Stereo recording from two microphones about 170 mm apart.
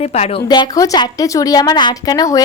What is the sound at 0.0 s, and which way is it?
Speech, 40° left (ahead or behind).